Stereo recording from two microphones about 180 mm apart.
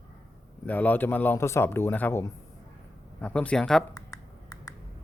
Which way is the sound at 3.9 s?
20° left (ahead or behind).